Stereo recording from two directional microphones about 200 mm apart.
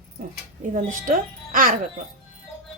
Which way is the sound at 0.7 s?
40° right (ahead or behind).